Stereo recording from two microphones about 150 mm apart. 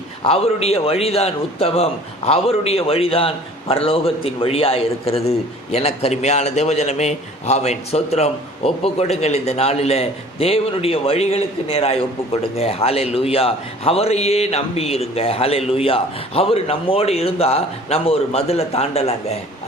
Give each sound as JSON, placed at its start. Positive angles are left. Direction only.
{"t": 0.3, "sound": "a man's voice", "side_deg": 40}